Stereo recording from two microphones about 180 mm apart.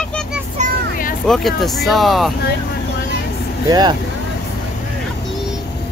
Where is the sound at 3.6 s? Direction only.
25° right (ahead or behind).